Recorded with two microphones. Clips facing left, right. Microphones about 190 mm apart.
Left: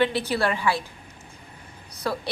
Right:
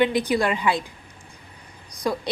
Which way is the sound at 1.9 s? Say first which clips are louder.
Right 3 dB; 15° right (ahead or behind).